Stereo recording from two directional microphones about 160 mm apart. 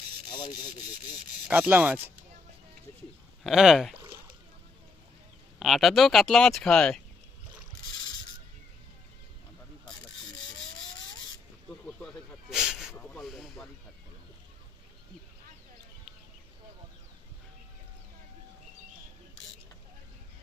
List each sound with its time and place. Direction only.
0.3 s speech: 30° left (ahead or behind)
1.5 s rub: 10° right (ahead or behind)
3.4 s speech: centre (ahead or behind)
5.5 s speech: centre (ahead or behind)
11.9 s snake: 5° left (ahead or behind)
12.5 s a sound: 5° right (ahead or behind)
13.0 s snake: 5° left (ahead or behind)